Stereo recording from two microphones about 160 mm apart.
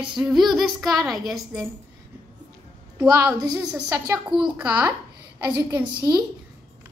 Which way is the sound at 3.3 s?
25° right (ahead or behind).